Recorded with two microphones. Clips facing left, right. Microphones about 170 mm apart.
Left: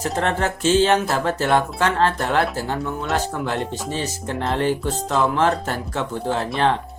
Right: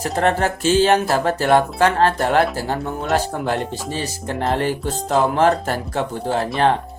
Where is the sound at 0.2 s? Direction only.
50° right (ahead or behind).